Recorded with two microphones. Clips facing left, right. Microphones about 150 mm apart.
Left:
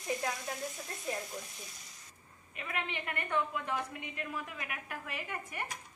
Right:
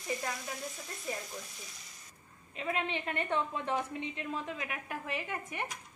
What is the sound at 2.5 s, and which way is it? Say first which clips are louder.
A woman's voice: right 5 dB; 30° right (ahead or behind).